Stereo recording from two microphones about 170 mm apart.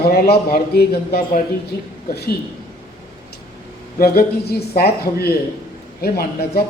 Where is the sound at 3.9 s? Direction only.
60° left (ahead or behind).